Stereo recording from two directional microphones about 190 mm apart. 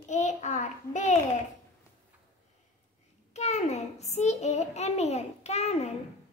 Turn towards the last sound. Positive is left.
turn(degrees=35)  # may be behind; listen again after turning